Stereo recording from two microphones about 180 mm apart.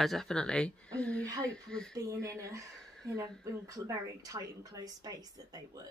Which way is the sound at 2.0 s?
15° right (ahead or behind).